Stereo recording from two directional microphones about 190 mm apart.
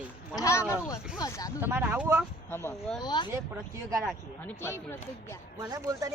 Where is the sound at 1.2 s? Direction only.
20° left (ahead or behind).